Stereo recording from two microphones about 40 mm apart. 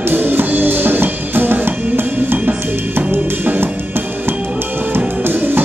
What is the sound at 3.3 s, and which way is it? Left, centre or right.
Music, right.